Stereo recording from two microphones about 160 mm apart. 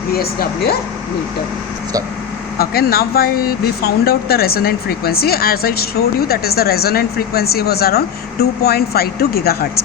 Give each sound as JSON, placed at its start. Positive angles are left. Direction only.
{"t": 0.1, "sound": "speech", "side_deg": 75}
{"t": 2.6, "sound": "speech", "side_deg": 70}